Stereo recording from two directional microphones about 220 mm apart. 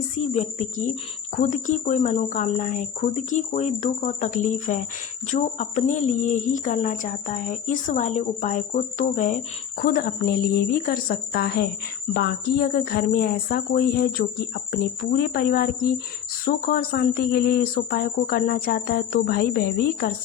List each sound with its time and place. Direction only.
0.3 s speech: 35° left (ahead or behind)